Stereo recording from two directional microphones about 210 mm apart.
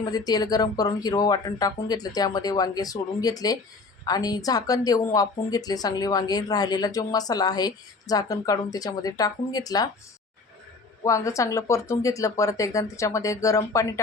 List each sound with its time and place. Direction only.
0.0 s speech: 20° left (ahead or behind)
11.0 s speech: 15° left (ahead or behind)